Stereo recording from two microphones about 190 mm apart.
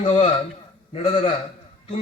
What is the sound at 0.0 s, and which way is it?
A man's voice, 25° left (ahead or behind).